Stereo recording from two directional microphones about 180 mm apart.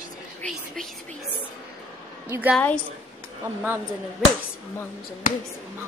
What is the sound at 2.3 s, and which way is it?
Speech, 10° right (ahead or behind).